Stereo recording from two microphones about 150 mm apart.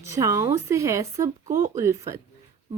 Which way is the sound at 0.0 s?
20° right (ahead or behind).